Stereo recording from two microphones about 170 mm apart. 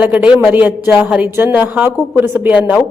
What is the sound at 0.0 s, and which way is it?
A woman's voice, 10° right (ahead or behind).